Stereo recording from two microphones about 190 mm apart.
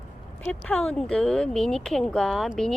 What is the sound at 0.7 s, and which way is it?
Speech, 5° left (ahead or behind).